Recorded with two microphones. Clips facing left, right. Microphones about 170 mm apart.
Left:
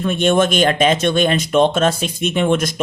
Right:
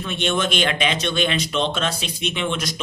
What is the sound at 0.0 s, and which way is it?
Speech, 45° left (ahead or behind).